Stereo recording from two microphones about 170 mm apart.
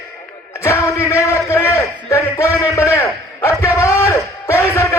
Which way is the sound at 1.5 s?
15° left (ahead or behind).